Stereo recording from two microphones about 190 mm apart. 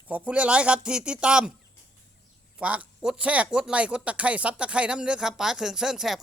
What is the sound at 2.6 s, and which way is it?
Speech, 5° right (ahead or behind).